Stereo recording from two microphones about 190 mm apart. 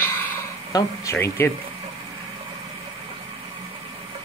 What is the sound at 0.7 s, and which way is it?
Speech, 15° left (ahead or behind).